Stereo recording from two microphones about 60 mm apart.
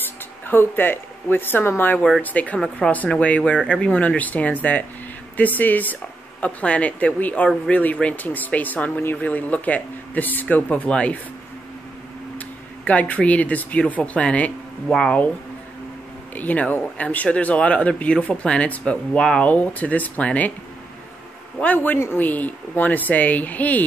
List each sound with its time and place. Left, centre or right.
0.5 s speech: left
12.4 s speech: left
16.3 s speech: left
19.4 s speech: left
21.5 s speech: left